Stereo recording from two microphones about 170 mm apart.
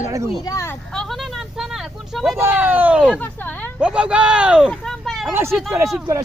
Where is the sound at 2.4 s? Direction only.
10° right (ahead or behind).